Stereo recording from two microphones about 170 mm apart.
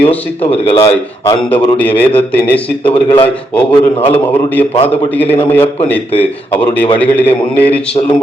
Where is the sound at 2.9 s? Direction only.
30° left (ahead or behind).